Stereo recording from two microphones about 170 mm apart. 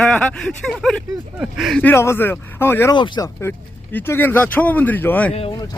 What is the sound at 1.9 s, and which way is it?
Speech, 15° left (ahead or behind).